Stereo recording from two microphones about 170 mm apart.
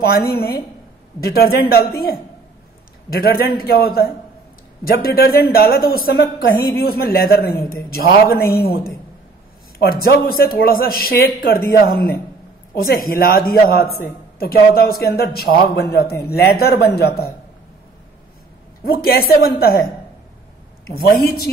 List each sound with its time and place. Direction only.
0.0 s speech: 65° left (ahead or behind)
3.1 s a man's voice: 60° left (ahead or behind)
18.9 s speech: 60° left (ahead or behind)
20.8 s speech: 60° left (ahead or behind)